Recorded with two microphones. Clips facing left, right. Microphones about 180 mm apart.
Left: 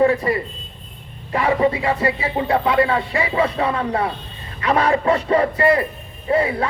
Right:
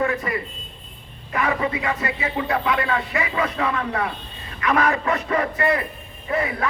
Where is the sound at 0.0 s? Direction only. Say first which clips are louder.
Left 7 dB; 30° left (ahead or behind).